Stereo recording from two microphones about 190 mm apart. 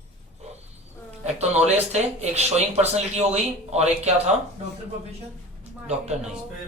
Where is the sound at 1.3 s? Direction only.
35° right (ahead or behind).